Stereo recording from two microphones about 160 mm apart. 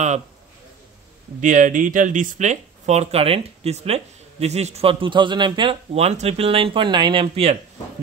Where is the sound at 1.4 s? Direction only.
55° right (ahead or behind).